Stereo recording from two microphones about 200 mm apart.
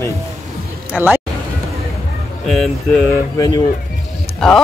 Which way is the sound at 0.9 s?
5° right (ahead or behind).